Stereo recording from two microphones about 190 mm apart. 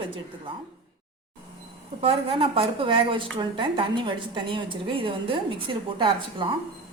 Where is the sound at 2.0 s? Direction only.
30° right (ahead or behind).